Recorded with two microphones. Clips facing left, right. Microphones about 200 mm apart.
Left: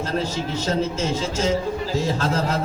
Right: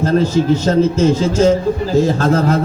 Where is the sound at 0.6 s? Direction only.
55° right (ahead or behind).